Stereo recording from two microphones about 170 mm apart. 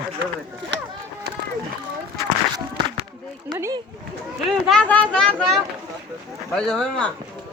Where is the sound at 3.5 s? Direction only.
15° right (ahead or behind).